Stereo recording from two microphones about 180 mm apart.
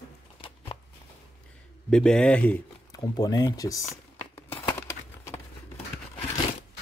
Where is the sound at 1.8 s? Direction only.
5° left (ahead or behind).